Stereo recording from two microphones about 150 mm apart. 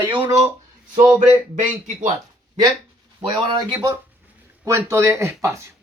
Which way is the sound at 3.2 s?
30° right (ahead or behind).